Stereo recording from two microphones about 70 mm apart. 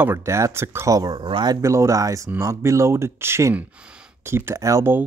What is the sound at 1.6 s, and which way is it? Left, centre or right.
Speech, right.